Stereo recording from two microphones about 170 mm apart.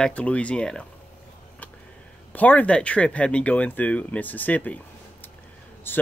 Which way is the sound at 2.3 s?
10° left (ahead or behind).